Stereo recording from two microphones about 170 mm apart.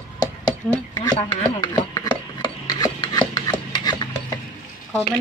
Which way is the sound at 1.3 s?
15° left (ahead or behind).